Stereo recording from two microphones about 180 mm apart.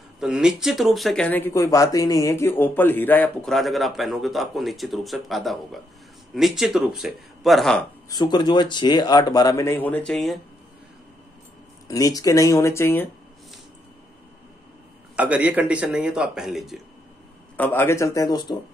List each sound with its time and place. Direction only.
0.2 s speech: 5° right (ahead or behind)
8.1 s speech: 25° left (ahead or behind); by 10.4 s centre (ahead or behind)
11.9 s speech: 20° left (ahead or behind)
15.1 s speech: 10° right (ahead or behind)
17.6 s speech: 15° left (ahead or behind)